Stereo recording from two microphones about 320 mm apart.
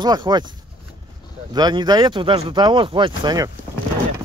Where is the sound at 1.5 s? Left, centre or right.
Centre.